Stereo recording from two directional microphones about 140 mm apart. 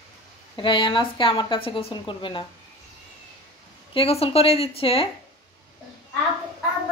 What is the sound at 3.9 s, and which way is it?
A woman's voice, 45° left (ahead or behind).